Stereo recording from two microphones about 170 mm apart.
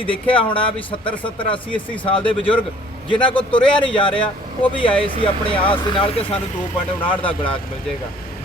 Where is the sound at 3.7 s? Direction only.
30° left (ahead or behind).